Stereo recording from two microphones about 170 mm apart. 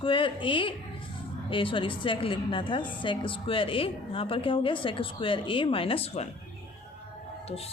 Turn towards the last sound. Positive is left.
turn(degrees=35)  # may be behind; listen again after turning